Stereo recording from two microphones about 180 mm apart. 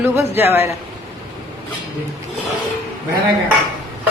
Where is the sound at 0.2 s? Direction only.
10° right (ahead or behind).